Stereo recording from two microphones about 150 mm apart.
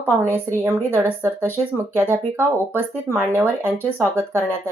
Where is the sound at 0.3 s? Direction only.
15° right (ahead or behind).